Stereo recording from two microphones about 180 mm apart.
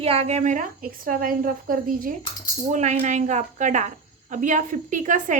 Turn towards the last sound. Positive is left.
turn(degrees=-45)  # may be behind; listen again after turning